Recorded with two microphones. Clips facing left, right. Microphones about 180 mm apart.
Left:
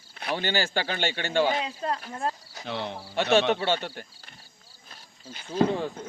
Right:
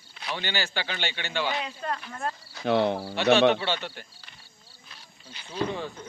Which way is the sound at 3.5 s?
45° left (ahead or behind).